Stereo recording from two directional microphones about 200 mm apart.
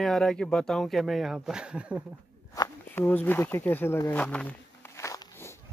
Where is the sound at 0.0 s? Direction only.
5° left (ahead or behind).